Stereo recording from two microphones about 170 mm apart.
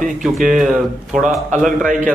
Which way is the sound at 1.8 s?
50° right (ahead or behind).